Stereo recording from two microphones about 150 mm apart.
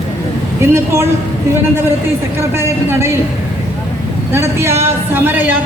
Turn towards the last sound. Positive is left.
turn(degrees=-10)  # may be behind; listen again after turning